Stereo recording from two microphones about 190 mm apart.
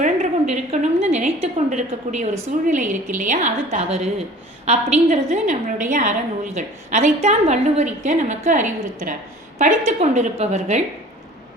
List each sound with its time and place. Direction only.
0.0 s a woman's voice: 40° right (ahead or behind)